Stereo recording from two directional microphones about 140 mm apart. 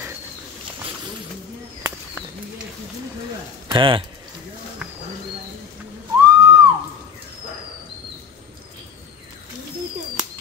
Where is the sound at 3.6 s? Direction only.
35° right (ahead or behind).